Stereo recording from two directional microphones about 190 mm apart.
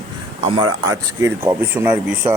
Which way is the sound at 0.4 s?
25° right (ahead or behind).